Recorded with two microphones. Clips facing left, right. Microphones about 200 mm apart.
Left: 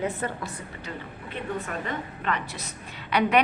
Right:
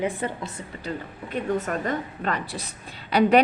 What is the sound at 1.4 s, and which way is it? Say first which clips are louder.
A woman's voice: right 6 dB; 40° right (ahead or behind).